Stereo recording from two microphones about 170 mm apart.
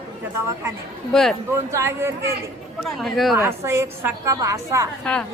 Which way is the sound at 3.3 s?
15° right (ahead or behind).